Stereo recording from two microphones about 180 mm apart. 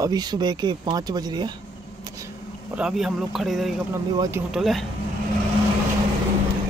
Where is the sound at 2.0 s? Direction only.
20° right (ahead or behind).